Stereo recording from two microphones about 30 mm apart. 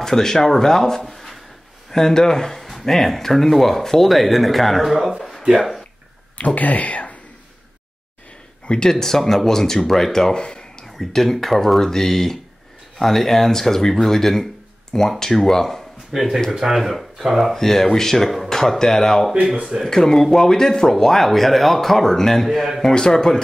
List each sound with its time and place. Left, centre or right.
0.0 s speech: centre
1.9 s speech: centre
5.4 s speech: right
6.3 s speech: left
8.6 s speech: left
8.9 s speech: centre
10.3 s a sound: left
10.9 s speech: centre
16.1 s speech: centre
17.6 s speech: centre
21.3 s speech: centre
22.9 s speech: left